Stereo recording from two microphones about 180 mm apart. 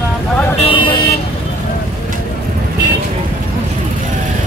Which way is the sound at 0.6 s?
30° left (ahead or behind).